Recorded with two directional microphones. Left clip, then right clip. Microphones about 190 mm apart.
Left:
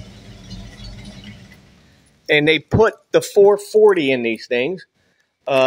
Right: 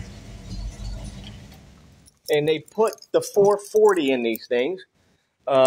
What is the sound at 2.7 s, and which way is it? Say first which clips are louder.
Speech: left 6 dB; 40° left (ahead or behind).